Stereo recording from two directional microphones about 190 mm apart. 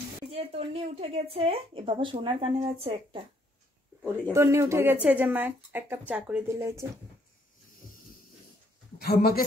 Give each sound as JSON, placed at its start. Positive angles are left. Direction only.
{"t": 0.3, "sound": "speech", "side_deg": -30}
{"t": 4.0, "sound": "speech", "side_deg": -15}
{"t": 8.9, "sound": "speech", "side_deg": 55}